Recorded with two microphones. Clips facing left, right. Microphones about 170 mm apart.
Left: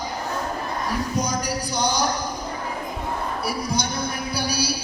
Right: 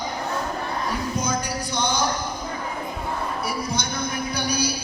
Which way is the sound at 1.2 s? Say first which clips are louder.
Left 1 dB; 35° left (ahead or behind).